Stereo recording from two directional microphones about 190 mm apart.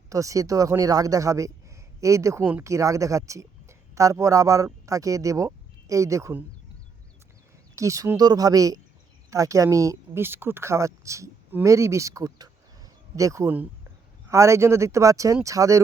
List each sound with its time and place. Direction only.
0.1 s speech: 15° right (ahead or behind)
7.8 s a man's voice: 15° right (ahead or behind)